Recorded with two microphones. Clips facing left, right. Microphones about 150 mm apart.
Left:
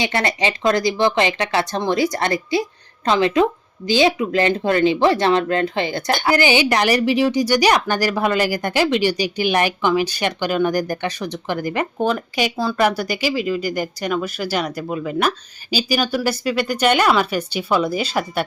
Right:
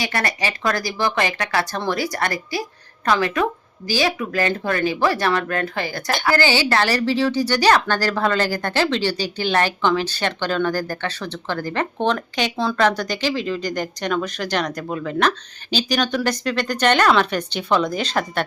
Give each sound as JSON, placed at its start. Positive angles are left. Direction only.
{"t": 0.0, "sound": "speech", "side_deg": 25}